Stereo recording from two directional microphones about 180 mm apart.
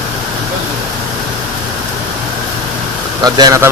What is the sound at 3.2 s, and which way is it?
Speech, 20° right (ahead or behind).